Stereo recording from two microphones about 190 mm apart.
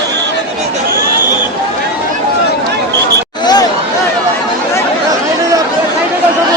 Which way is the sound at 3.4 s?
20° left (ahead or behind).